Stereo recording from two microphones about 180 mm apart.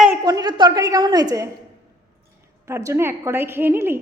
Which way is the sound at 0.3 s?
20° right (ahead or behind).